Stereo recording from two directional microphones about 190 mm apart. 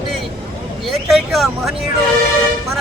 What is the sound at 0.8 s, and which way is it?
Speech, centre (ahead or behind).